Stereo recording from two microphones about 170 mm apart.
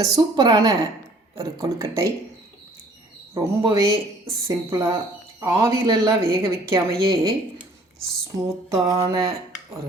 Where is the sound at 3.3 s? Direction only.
20° right (ahead or behind).